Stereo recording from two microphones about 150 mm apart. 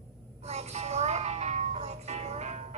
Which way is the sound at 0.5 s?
45° right (ahead or behind).